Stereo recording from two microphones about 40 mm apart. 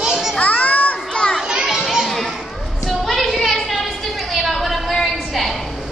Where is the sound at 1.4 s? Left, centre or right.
Centre.